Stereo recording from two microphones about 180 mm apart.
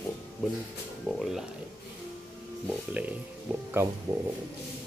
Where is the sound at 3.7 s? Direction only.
15° right (ahead or behind).